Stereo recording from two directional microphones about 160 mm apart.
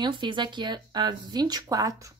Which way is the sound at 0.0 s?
30° right (ahead or behind).